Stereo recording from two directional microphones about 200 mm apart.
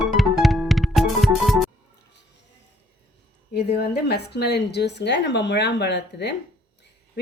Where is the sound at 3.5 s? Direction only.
55° left (ahead or behind).